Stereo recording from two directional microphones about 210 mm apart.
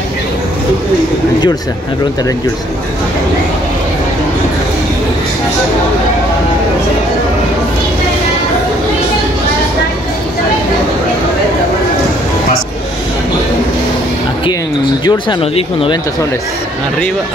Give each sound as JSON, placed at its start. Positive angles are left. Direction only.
{"t": 15.0, "sound": "speech", "side_deg": 25}